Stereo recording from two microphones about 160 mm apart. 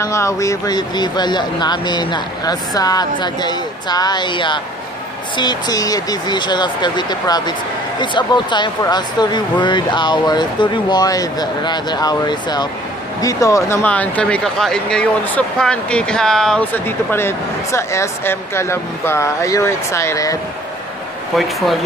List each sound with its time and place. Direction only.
0.0 s speech: 20° left (ahead or behind)
21.4 s speech: centre (ahead or behind)